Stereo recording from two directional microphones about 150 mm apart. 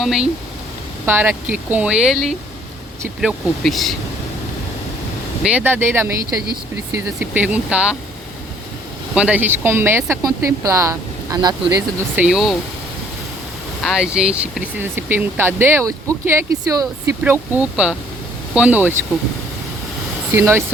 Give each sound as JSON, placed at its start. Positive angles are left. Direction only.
{"t": 0.0, "sound": "speech", "side_deg": -5}
{"t": 1.0, "sound": "speech", "side_deg": -15}
{"t": 5.4, "sound": "speech", "side_deg": -10}
{"t": 9.1, "sound": "speech", "side_deg": -10}
{"t": 12.1, "sound": "speech", "side_deg": -5}
{"t": 13.8, "sound": "speech", "side_deg": -5}
{"t": 20.3, "sound": "speech", "side_deg": -15}